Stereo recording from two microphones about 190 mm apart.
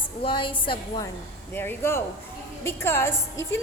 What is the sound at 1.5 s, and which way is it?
A woman's voice, 10° left (ahead or behind).